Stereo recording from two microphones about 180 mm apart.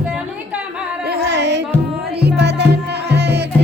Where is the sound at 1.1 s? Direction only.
70° right (ahead or behind).